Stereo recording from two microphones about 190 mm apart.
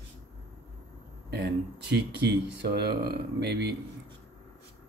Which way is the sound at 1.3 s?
60° right (ahead or behind).